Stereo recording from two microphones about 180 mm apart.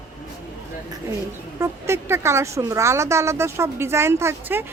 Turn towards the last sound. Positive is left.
turn(degrees=-15)  # may be behind; listen again after turning